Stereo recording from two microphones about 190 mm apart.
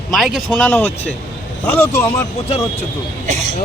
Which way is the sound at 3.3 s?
40° right (ahead or behind).